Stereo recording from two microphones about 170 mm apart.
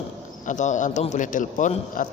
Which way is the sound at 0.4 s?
45° left (ahead or behind).